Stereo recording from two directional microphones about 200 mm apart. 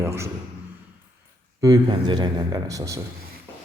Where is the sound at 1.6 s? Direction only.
20° right (ahead or behind).